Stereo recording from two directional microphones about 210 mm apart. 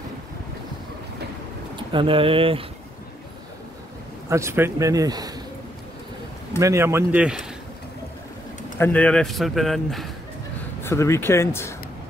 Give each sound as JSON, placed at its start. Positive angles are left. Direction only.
{"t": 1.8, "sound": "speech", "side_deg": -25}
{"t": 4.3, "sound": "speech", "side_deg": -15}
{"t": 6.6, "sound": "speech", "side_deg": -15}
{"t": 8.7, "sound": "speech", "side_deg": 10}
{"t": 10.8, "sound": "speech", "side_deg": 10}